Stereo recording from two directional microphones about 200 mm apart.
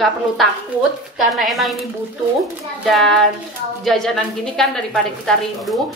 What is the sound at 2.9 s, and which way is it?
A woman's voice, centre (ahead or behind).